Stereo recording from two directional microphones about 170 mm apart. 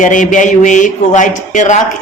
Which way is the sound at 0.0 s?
50° left (ahead or behind).